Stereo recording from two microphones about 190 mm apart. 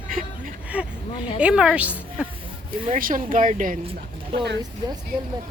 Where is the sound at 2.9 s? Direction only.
45° right (ahead or behind).